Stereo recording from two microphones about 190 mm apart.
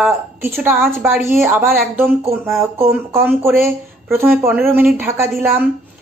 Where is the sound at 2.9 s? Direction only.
15° right (ahead or behind).